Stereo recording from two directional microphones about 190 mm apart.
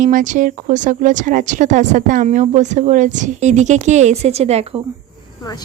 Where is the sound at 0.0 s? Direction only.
40° right (ahead or behind).